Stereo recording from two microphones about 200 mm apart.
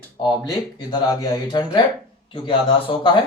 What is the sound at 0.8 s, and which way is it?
Speech, 20° left (ahead or behind).